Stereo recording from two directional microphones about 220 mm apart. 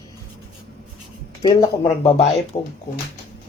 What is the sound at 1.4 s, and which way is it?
Speech, 15° left (ahead or behind).